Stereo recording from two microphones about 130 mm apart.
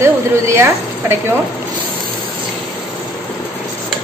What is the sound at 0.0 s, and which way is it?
Speech, 20° right (ahead or behind).